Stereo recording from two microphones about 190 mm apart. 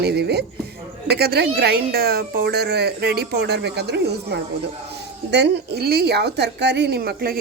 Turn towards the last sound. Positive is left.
turn(degrees=-55)  # may be behind; listen again after turning